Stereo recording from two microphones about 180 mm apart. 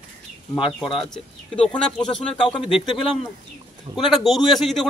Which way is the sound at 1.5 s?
5° left (ahead or behind).